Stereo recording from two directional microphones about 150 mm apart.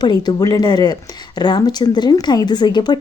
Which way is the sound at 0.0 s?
30° left (ahead or behind).